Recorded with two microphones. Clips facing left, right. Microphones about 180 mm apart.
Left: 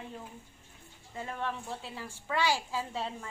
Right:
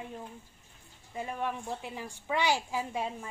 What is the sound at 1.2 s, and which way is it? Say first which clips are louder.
A woman's voice: right 2 dB; 15° right (ahead or behind).